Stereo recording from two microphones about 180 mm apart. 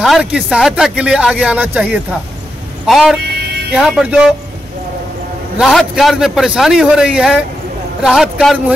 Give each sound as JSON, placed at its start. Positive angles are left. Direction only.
{"t": 0.0, "sound": "speech", "side_deg": -5}
{"t": 5.6, "sound": "speech", "side_deg": 0}